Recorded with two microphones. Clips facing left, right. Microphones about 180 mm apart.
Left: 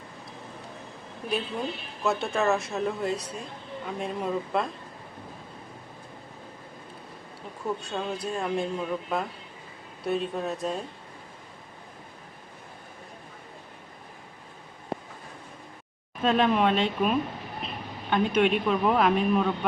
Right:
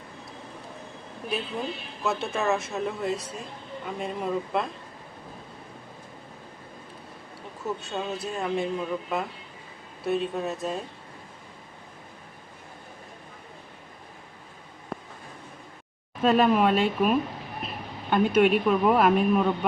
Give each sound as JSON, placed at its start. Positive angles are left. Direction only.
{"t": 1.3, "sound": "a man's voice", "side_deg": 0}
{"t": 7.8, "sound": "a man's voice", "side_deg": -5}
{"t": 16.2, "sound": "a man's voice", "side_deg": -5}